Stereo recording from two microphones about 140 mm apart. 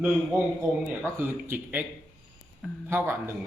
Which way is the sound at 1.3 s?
15° right (ahead or behind).